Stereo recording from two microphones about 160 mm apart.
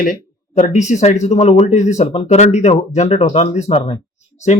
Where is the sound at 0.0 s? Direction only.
55° left (ahead or behind).